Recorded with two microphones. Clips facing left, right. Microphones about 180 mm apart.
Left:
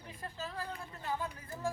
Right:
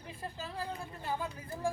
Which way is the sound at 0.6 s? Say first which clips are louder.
Right 3 dB; 25° right (ahead or behind).